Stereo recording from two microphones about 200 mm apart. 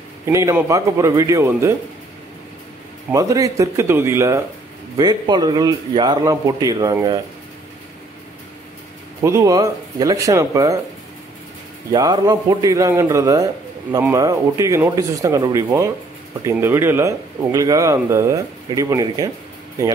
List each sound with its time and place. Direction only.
0.3 s a man's voice: 15° right (ahead or behind)
3.1 s a man's voice: 15° right (ahead or behind)
9.2 s a man's voice: 15° right (ahead or behind)
11.9 s a man's voice: 20° right (ahead or behind)